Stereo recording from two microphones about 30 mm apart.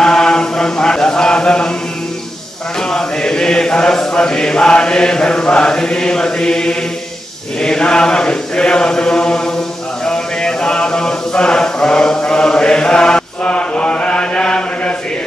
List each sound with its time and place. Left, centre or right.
0.0 s chant: left
2.9 s chant: left
4.1 s mantra: left
7.6 s chant: left
10.0 s mantra: left